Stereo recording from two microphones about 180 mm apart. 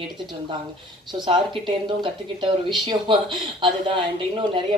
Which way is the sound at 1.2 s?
25° right (ahead or behind).